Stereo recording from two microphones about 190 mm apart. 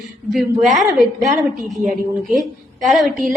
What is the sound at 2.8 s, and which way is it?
Speech, centre (ahead or behind).